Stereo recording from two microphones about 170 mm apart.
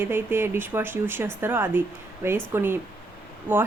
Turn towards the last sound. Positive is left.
turn(degrees=-10)  # may be behind; listen again after turning